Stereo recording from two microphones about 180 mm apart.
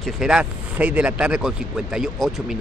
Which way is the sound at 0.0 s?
5° right (ahead or behind).